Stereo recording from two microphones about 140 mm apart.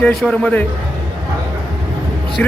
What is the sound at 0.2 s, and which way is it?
Speech, 5° left (ahead or behind).